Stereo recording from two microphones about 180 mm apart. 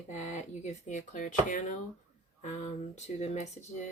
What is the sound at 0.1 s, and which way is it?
Speech, 40° left (ahead or behind).